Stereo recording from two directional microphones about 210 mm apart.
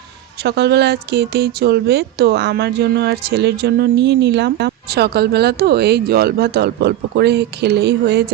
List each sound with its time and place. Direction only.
0.4 s speech: 50° right (ahead or behind)